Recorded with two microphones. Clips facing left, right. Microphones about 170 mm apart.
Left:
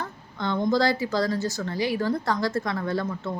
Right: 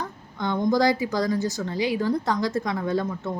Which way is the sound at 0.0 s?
15° right (ahead or behind).